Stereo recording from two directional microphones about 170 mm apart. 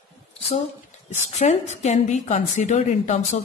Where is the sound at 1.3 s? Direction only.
40° left (ahead or behind).